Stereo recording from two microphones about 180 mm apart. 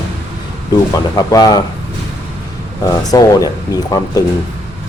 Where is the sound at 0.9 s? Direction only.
20° left (ahead or behind).